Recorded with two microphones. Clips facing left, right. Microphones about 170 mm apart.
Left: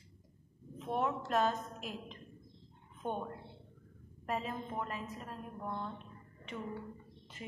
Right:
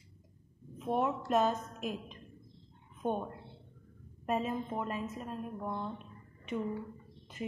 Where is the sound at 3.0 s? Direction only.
15° right (ahead or behind).